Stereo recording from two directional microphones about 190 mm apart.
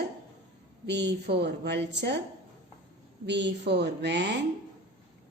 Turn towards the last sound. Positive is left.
turn(degrees=-65)  # may be behind; listen again after turning